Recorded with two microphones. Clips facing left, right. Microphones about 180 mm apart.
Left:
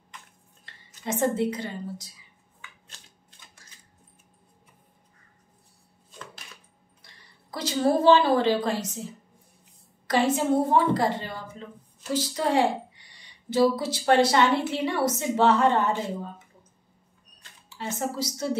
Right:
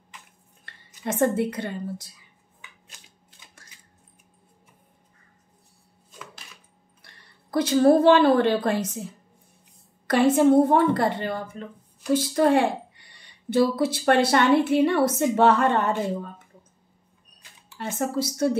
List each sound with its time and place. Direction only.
0.7 s a woman's voice: 60° right (ahead or behind)
7.5 s a woman's voice: 55° right (ahead or behind)
10.0 s a woman's voice: 60° right (ahead or behind)
17.6 s a woman's voice: 55° right (ahead or behind)